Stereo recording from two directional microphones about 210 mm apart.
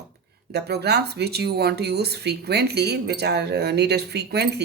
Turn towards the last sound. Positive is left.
turn(degrees=-50)  # may be behind; listen again after turning